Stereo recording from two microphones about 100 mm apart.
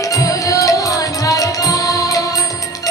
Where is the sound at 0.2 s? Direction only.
35° left (ahead or behind).